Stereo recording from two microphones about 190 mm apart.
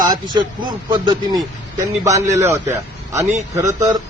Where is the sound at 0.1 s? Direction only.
25° right (ahead or behind).